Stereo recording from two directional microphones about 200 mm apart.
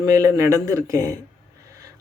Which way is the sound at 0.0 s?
15° right (ahead or behind).